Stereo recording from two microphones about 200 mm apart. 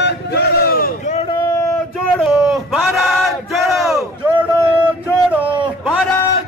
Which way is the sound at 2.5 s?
Centre (ahead or behind).